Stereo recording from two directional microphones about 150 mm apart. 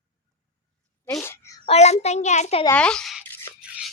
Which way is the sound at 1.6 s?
45° left (ahead or behind).